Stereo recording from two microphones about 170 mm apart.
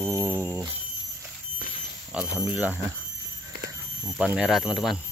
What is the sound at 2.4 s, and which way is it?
Speech, 10° right (ahead or behind).